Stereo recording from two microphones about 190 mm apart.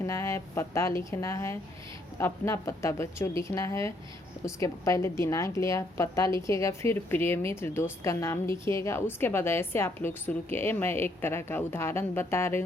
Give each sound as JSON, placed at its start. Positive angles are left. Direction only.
{"t": 0.0, "sound": "a woman's voice", "side_deg": 15}